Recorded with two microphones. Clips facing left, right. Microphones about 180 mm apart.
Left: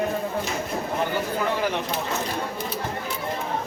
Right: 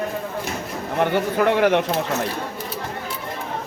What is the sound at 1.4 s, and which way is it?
Speech, 70° right (ahead or behind).